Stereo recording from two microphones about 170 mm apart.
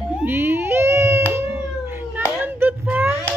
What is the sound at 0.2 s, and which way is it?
Baby cry, 15° right (ahead or behind).